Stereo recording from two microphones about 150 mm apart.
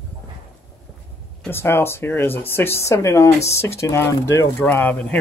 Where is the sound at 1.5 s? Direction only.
15° left (ahead or behind).